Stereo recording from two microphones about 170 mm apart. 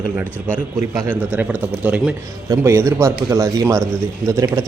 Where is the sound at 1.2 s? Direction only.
10° right (ahead or behind).